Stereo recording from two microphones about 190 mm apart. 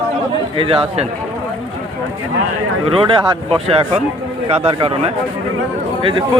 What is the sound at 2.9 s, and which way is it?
Speech, 30° right (ahead or behind).